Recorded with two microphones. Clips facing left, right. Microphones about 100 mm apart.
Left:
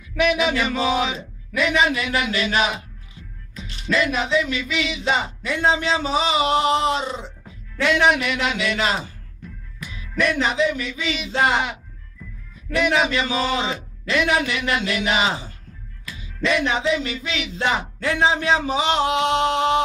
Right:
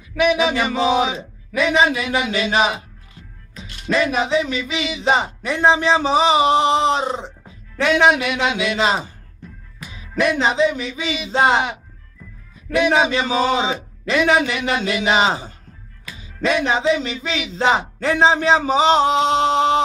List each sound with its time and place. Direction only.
0.1 s music: 20° right (ahead or behind)
0.7 s a man's voice: 25° right (ahead or behind)
3.9 s a man's voice: 25° right (ahead or behind)
7.8 s a man's voice: 25° right (ahead or behind)
16.1 s music: 35° right (ahead or behind)
16.5 s a man's voice: 30° right (ahead or behind)